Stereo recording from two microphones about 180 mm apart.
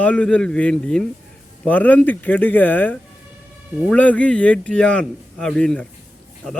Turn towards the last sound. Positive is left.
turn(degrees=5)  # may be behind; listen again after turning